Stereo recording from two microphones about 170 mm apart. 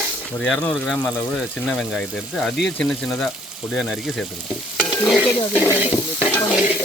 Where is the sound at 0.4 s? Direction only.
5° left (ahead or behind).